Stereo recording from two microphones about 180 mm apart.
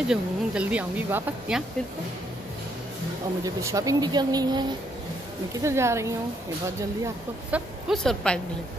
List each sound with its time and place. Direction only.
0.1 s speech: 5° right (ahead or behind)
3.4 s speech: 20° right (ahead or behind)
7.5 s a woman's voice: centre (ahead or behind)